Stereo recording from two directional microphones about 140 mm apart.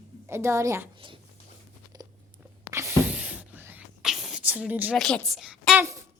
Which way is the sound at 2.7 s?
20° right (ahead or behind).